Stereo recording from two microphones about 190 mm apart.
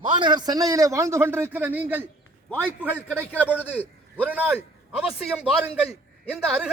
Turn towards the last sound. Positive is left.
turn(degrees=-5)  # may be behind; listen again after turning